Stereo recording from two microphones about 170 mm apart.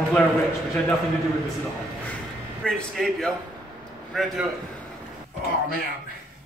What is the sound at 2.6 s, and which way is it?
A man's voice, 5° left (ahead or behind).